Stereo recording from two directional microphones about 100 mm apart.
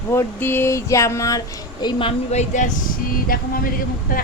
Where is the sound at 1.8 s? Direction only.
45° left (ahead or behind).